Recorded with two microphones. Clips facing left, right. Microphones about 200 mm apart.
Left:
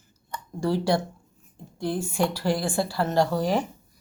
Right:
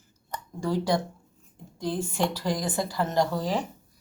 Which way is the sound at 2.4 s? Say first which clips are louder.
Left 3 dB; 20° right (ahead or behind).